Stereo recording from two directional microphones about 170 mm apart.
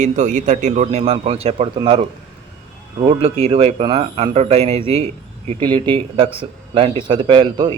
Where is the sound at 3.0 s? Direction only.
35° right (ahead or behind).